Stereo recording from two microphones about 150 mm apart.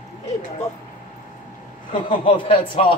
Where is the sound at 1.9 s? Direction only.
35° left (ahead or behind).